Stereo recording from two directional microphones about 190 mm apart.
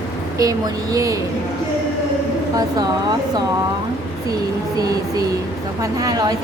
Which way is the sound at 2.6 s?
20° right (ahead or behind).